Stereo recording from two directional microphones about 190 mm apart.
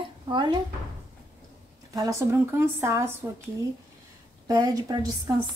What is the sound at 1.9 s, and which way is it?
Speech, 15° right (ahead or behind).